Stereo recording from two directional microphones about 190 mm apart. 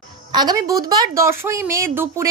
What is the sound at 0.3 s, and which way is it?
A woman's voice, 20° right (ahead or behind).